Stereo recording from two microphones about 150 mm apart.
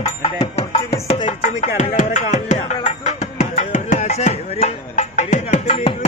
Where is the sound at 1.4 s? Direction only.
55° left (ahead or behind).